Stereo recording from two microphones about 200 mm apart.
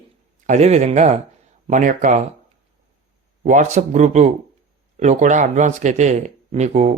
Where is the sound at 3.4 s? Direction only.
35° right (ahead or behind).